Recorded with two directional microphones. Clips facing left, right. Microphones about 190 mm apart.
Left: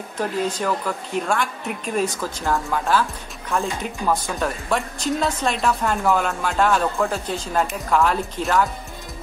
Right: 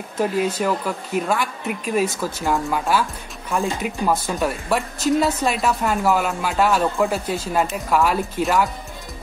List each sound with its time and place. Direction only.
0.2 s speech: 10° right (ahead or behind)